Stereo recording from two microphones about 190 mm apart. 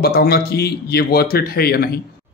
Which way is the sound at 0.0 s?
55° left (ahead or behind).